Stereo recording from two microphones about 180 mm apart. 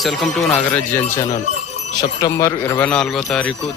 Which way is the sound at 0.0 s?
Centre (ahead or behind).